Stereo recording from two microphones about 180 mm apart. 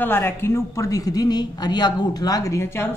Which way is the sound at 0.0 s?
10° left (ahead or behind).